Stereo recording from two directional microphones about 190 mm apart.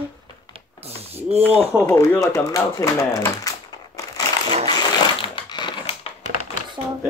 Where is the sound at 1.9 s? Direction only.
15° left (ahead or behind).